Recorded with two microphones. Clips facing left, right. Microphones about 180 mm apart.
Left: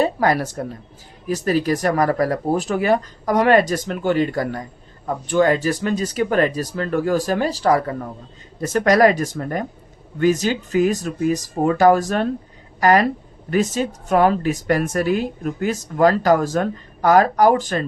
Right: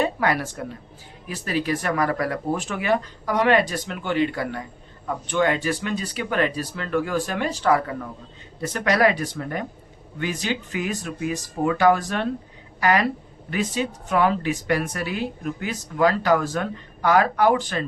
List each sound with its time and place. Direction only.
0.0 s a woman's voice: 40° left (ahead or behind)